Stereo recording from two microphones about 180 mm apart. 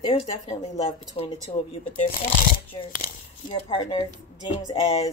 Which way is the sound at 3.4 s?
25° left (ahead or behind).